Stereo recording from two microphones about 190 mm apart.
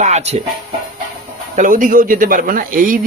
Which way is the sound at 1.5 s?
45° right (ahead or behind).